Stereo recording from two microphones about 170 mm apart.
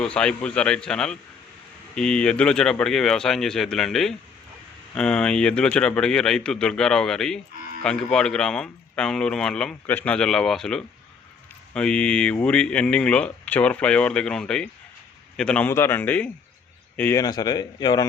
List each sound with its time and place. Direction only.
0.0 s speech: 5° left (ahead or behind)
17.2 s a man's voice: 25° left (ahead or behind)